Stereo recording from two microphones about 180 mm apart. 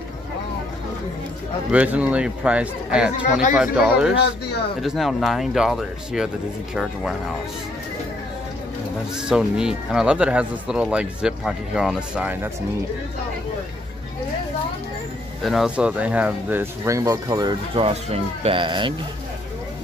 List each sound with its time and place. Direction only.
1.7 s speech: 10° right (ahead or behind)
9.3 s speech: 5° right (ahead or behind)
15.4 s speech: centre (ahead or behind); by 18.9 s 25° right (ahead or behind)